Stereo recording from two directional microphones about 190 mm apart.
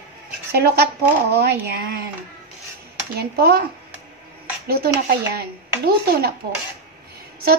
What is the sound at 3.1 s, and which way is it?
Speech, 55° right (ahead or behind).